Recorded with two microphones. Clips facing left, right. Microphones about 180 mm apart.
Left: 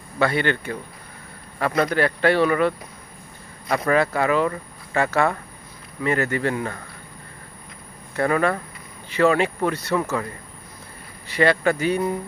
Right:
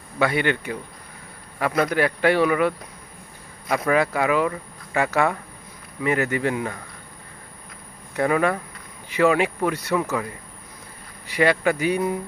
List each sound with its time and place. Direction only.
0.2 s speech: 15° right (ahead or behind)
8.2 s speech: 15° right (ahead or behind)
11.2 s speech: 10° right (ahead or behind)